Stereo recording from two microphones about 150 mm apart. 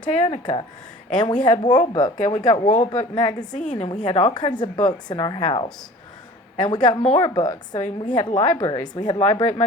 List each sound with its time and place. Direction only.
0.2 s a woman's voice: 35° left (ahead or behind)
2.6 s speech: 55° left (ahead or behind)
4.0 s a woman's voice: 40° left (ahead or behind)
4.3 s a woman's voice: 30° left (ahead or behind)
7.0 s speech: 45° left (ahead or behind)
7.3 s speech: 30° left (ahead or behind)
7.8 s speech: 50° left (ahead or behind)
8.1 s a woman's voice: 30° left (ahead or behind)